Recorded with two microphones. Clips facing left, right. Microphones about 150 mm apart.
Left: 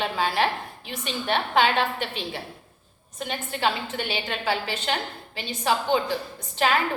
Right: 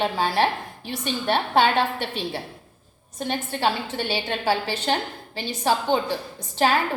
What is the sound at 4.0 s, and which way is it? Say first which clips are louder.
Speech: right 3 dB; 30° right (ahead or behind).